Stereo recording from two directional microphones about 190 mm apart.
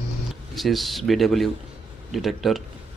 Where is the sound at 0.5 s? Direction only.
Centre (ahead or behind).